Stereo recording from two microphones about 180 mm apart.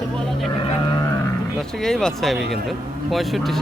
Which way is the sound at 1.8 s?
5° left (ahead or behind).